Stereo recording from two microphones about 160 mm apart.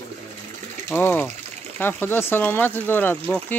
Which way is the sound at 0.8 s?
15° left (ahead or behind).